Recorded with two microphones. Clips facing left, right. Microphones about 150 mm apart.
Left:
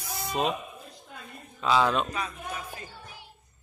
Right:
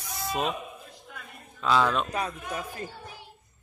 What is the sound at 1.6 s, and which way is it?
Mantra, 5° left (ahead or behind).